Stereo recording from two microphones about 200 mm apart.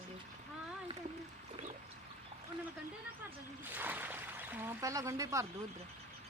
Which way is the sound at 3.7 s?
10° right (ahead or behind).